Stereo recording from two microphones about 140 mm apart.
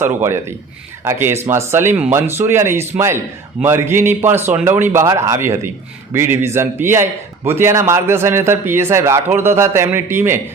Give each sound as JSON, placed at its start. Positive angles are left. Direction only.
{"t": 0.0, "sound": "a man's voice", "side_deg": -20}